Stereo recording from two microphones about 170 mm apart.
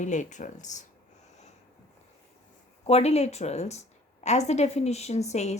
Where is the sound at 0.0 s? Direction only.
45° left (ahead or behind).